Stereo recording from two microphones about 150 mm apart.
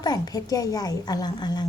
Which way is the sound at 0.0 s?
25° left (ahead or behind).